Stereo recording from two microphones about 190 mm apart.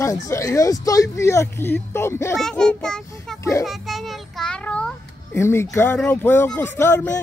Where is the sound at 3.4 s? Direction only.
15° left (ahead or behind).